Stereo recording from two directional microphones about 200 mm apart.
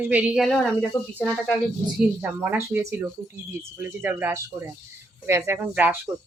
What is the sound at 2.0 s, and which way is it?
Speech, 10° right (ahead or behind).